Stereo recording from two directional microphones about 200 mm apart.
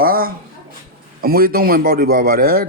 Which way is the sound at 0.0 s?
45° right (ahead or behind).